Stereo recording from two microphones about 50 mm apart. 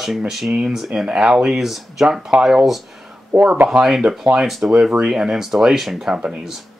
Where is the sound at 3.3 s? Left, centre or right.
Centre.